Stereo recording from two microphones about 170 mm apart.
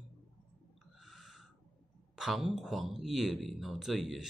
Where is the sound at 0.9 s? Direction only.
Centre (ahead or behind).